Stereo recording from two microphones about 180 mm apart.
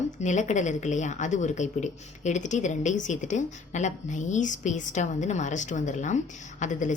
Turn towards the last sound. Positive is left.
turn(degrees=45)  # may be behind; listen again after turning